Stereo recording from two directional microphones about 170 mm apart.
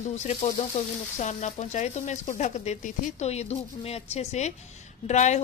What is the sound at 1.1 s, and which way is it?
Speech, 45° left (ahead or behind).